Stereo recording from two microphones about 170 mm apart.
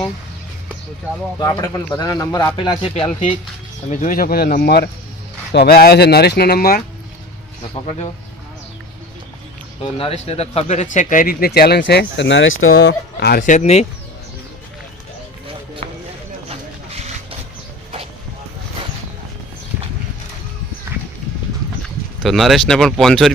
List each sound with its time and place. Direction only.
1.4 s speech: 20° left (ahead or behind)
3.8 s speech: 50° left (ahead or behind)
10.0 s speech: 35° left (ahead or behind); by 13.4 s 75° left (ahead or behind)
13.4 s speech: 45° left (ahead or behind)
16.5 s a sound: 40° right (ahead or behind)
22.2 s speech: centre (ahead or behind)